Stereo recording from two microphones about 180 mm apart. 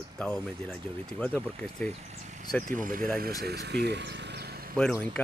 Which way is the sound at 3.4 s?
70° right (ahead or behind).